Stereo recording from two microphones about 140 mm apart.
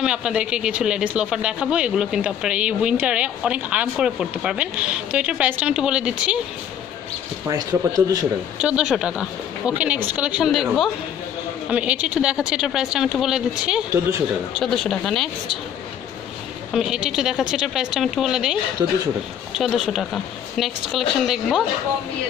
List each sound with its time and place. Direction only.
0.0 s speech: 5° right (ahead or behind)
7.4 s speech: 25° right (ahead or behind)
8.5 s speech: 5° right (ahead or behind)
16.7 s speech: 5° right (ahead or behind)